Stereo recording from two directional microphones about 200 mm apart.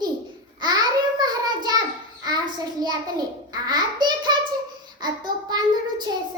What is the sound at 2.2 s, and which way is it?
A child's voice, 20° right (ahead or behind).